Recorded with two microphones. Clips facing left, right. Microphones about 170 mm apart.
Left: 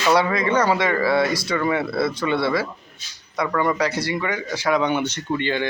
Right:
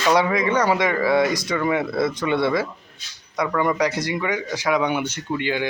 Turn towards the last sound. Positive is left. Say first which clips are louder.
# left 1 dB
turn(degrees=-10)  # may be behind; listen again after turning